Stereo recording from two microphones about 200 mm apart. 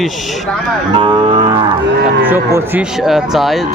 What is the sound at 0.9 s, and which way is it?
Speech, 25° right (ahead or behind).